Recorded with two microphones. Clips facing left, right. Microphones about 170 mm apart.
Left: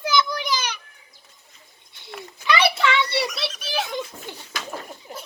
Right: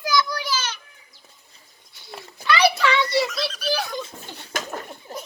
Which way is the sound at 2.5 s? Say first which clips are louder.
Right 1 dB; 25° left (ahead or behind).